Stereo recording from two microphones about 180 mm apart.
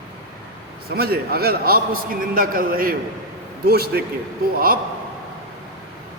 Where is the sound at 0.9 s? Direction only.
60° right (ahead or behind).